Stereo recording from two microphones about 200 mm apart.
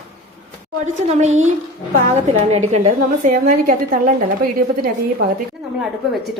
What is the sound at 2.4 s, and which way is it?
A woman's voice, 35° right (ahead or behind).